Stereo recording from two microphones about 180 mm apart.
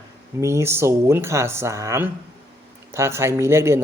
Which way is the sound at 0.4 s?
15° right (ahead or behind).